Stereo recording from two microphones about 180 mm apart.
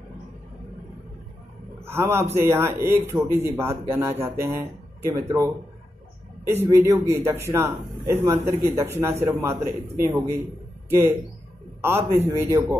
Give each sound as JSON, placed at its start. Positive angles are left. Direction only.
{"t": 1.9, "sound": "speech", "side_deg": -15}
{"t": 6.5, "sound": "speech", "side_deg": -15}